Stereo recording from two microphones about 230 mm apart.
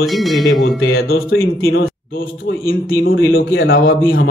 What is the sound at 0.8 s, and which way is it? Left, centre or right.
A man's voice, left.